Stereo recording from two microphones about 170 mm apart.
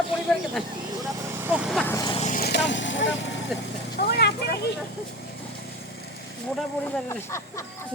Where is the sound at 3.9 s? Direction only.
70° left (ahead or behind).